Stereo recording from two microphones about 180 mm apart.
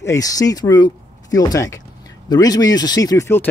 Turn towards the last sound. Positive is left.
turn(degrees=15)  # may be behind; listen again after turning